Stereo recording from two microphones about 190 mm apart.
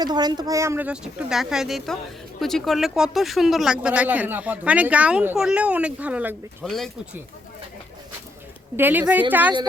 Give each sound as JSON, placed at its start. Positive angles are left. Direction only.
{"t": 0.0, "sound": "speech", "side_deg": -20}
{"t": 8.7, "sound": "speech", "side_deg": -10}